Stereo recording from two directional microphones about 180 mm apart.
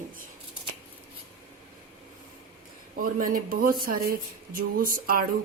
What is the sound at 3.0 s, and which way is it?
Speech, 50° right (ahead or behind).